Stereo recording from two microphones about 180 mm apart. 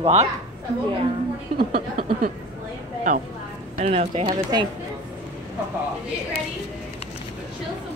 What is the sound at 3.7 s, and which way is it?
Speech, 35° right (ahead or behind).